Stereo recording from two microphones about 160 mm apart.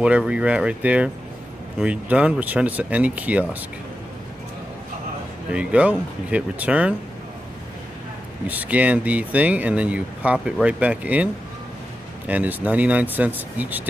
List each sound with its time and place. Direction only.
0.0 s speech: 5° right (ahead or behind)
5.5 s speech: 10° right (ahead or behind)
8.5 s speech: 10° right (ahead or behind)
12.3 s speech: 10° right (ahead or behind)